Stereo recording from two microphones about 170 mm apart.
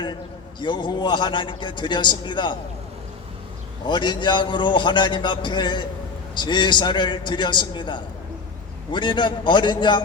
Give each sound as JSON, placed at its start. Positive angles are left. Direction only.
{"t": 0.6, "sound": "a man's voice", "side_deg": 25}
{"t": 3.8, "sound": "a man's voice", "side_deg": 25}